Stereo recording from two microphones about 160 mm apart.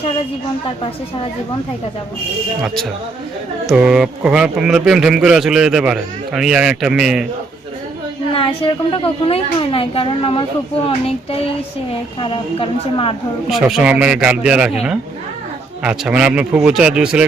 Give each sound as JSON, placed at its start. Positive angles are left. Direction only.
{"t": 3.7, "sound": "speech", "side_deg": -5}
{"t": 8.3, "sound": "a woman's voice", "side_deg": 35}
{"t": 13.5, "sound": "a man's voice", "side_deg": -5}